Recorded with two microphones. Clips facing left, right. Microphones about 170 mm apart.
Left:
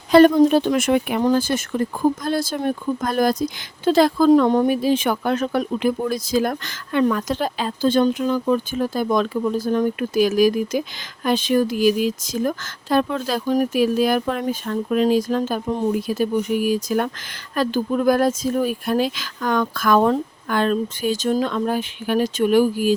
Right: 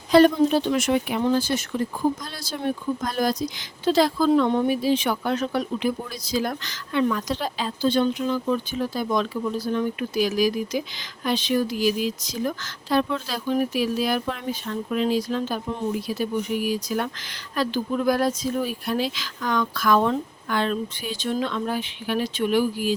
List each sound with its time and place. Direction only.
0.1 s speech: 55° left (ahead or behind)